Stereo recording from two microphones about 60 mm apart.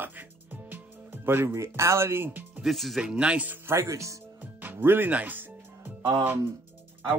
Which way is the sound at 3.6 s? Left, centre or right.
Right.